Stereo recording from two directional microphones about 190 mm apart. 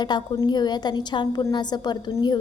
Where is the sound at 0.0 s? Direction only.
20° left (ahead or behind).